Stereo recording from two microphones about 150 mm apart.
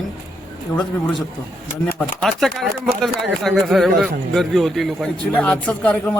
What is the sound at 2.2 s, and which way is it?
A man's voice, centre (ahead or behind).